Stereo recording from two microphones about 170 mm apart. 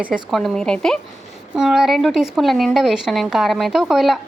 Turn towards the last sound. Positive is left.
turn(degrees=0)  # may be behind; listen again after turning